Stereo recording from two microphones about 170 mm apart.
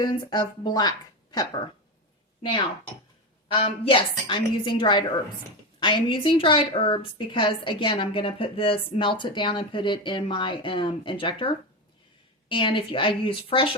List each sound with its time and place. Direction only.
0.0 s a woman's voice: 25° left (ahead or behind)
3.5 s a woman's voice: 30° left (ahead or behind)